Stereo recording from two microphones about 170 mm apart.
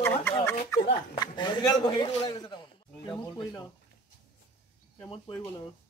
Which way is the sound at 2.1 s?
30° left (ahead or behind).